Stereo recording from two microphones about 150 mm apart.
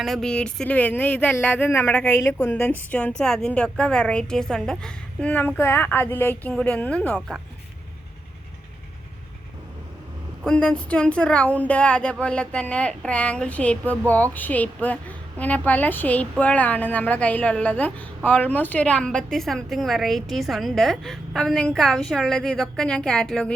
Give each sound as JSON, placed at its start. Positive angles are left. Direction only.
{"t": 0.0, "sound": "speech", "side_deg": 0}
{"t": 10.4, "sound": "a woman's voice", "side_deg": 5}